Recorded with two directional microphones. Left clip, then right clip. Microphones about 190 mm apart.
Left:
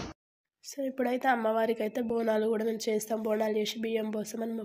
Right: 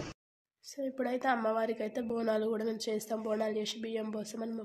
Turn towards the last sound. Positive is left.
turn(degrees=15)  # may be behind; listen again after turning